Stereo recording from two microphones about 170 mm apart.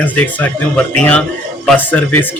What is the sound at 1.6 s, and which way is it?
Speech, 10° left (ahead or behind).